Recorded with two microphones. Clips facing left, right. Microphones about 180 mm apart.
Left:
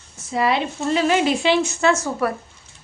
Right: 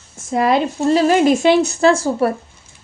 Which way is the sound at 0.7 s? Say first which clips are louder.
Right 6 dB; 40° right (ahead or behind).